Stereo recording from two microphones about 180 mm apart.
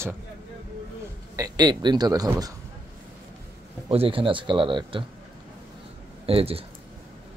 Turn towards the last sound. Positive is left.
turn(degrees=-30)  # may be behind; listen again after turning